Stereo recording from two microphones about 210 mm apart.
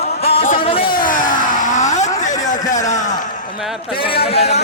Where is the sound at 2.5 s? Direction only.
35° left (ahead or behind).